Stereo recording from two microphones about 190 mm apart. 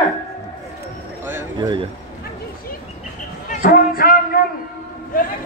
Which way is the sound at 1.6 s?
25° right (ahead or behind).